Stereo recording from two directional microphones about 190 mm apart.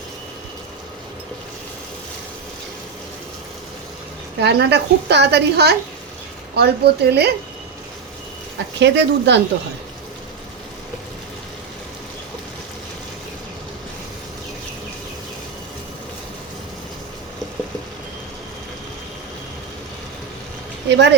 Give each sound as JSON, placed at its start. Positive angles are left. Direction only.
{"t": 4.4, "sound": "a woman's voice", "side_deg": -60}
{"t": 8.5, "sound": "a woman's voice", "side_deg": -65}
{"t": 20.9, "sound": "a woman's voice", "side_deg": -65}